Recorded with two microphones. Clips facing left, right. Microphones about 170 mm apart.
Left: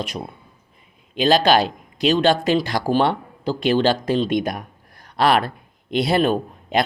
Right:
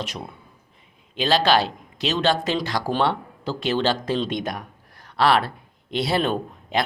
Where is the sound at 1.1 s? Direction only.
15° left (ahead or behind).